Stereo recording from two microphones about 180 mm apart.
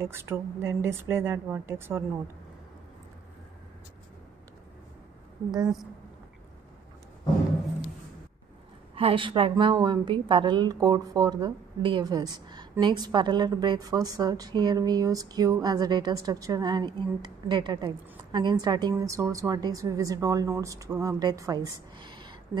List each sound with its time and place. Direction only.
0.0 s a woman's voice: 15° right (ahead or behind)
8.9 s a woman's voice: 30° right (ahead or behind)